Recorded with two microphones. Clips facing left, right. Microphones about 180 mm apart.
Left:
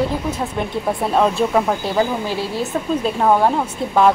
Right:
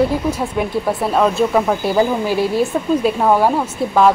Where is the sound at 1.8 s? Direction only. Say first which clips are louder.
Right 4 dB; 10° right (ahead or behind).